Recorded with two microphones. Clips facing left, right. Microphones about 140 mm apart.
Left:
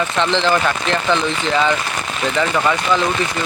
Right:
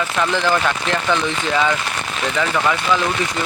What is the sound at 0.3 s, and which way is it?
Speech, 20° left (ahead or behind).